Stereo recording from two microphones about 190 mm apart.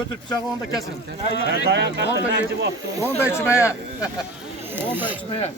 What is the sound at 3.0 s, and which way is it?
Speech, 15° left (ahead or behind).